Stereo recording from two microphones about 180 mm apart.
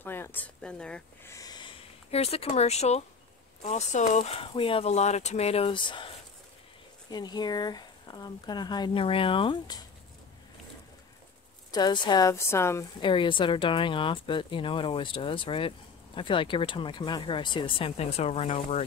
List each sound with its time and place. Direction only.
0.0 s speech: 10° left (ahead or behind)
1.3 s a sound: 20° left (ahead or behind); by 3.0 s 35° left (ahead or behind)
3.6 s speech: 40° left (ahead or behind); by 9.8 s 25° left (ahead or behind)
11.7 s speech: 25° left (ahead or behind)
13.0 s speech: 25° left (ahead or behind)